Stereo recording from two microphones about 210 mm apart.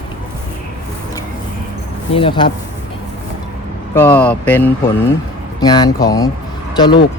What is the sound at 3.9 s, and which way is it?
Speech, 10° left (ahead or behind).